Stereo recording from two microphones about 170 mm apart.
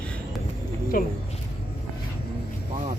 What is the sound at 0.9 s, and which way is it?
Speech, 50° left (ahead or behind).